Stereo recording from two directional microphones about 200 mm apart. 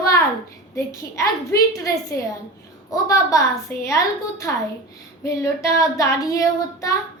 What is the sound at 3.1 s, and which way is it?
Child singing, 15° left (ahead or behind).